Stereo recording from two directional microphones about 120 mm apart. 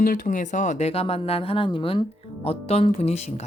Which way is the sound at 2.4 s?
55° left (ahead or behind).